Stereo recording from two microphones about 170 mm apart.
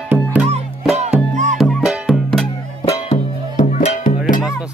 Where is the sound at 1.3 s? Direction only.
45° right (ahead or behind).